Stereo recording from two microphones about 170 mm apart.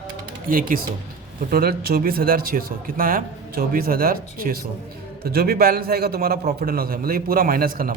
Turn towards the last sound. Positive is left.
turn(degrees=-55)  # may be behind; listen again after turning